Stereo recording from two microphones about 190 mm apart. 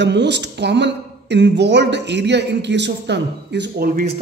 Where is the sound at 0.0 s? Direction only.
65° right (ahead or behind).